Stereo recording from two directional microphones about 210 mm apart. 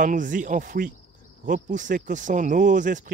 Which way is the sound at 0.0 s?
40° right (ahead or behind).